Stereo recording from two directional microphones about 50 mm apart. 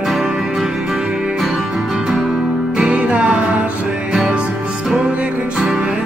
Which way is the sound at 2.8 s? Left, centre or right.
Right.